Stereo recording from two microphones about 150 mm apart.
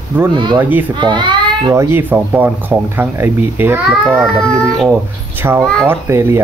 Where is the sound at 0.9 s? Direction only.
30° right (ahead or behind).